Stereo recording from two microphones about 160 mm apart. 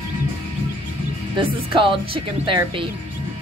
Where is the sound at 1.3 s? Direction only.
30° right (ahead or behind).